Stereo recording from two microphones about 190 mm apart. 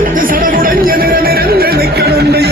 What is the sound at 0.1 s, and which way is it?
Music, 45° right (ahead or behind).